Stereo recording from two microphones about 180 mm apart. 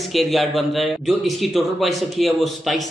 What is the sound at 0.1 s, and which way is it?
Speech, centre (ahead or behind).